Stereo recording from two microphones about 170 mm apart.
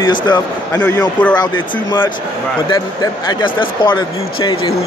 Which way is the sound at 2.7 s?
25° left (ahead or behind).